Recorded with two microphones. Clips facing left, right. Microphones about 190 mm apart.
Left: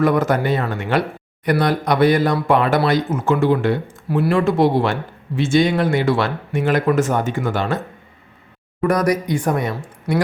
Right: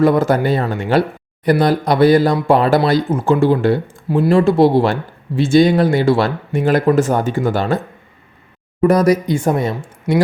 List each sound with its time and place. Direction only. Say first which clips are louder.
0.0 s speech: right 4 dB; 30° right (ahead or behind)
8.8 s speech: right 5 dB; 25° right (ahead or behind)